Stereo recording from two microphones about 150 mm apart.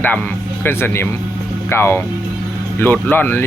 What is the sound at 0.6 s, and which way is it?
Speech, 15° left (ahead or behind).